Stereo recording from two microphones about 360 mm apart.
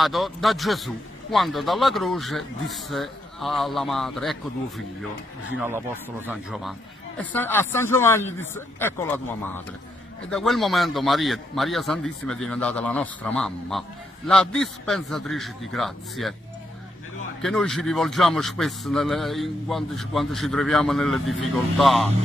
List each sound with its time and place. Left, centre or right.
0.0 s a man's voice: centre
6.2 s a man's voice: centre
17.4 s a man's voice: centre